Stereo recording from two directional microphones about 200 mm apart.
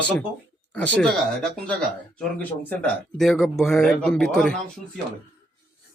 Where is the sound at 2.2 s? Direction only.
5° left (ahead or behind).